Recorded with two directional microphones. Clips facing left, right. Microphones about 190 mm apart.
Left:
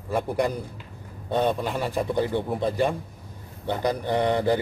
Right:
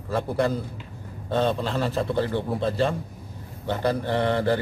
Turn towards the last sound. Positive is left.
turn(degrees=15)  # may be behind; listen again after turning